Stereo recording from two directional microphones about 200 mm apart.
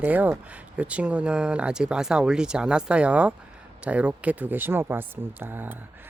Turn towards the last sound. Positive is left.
turn(degrees=-10)  # may be behind; listen again after turning